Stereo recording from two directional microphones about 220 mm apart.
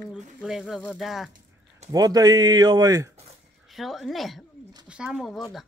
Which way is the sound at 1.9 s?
15° right (ahead or behind).